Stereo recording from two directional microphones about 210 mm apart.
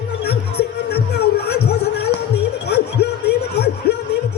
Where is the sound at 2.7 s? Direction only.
50° left (ahead or behind).